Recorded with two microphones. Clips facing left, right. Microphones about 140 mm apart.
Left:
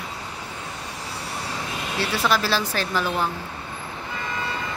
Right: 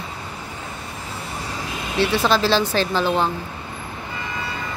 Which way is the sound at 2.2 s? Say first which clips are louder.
Right 2 dB; 25° right (ahead or behind).